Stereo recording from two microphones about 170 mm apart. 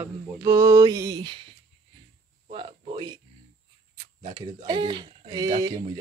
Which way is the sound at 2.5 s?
30° right (ahead or behind).